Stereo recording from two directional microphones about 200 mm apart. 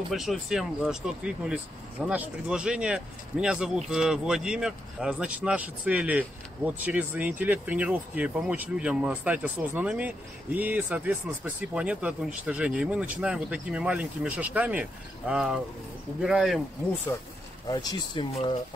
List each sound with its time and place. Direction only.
0.1 s speech: centre (ahead or behind)
17.6 s speech: 25° left (ahead or behind)